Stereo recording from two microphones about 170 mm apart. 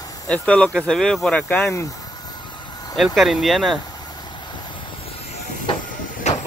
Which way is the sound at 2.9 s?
Centre (ahead or behind).